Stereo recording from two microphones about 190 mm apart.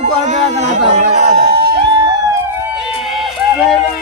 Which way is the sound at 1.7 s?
25° right (ahead or behind).